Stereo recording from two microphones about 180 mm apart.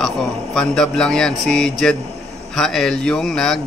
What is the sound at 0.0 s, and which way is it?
Speech, 5° left (ahead or behind).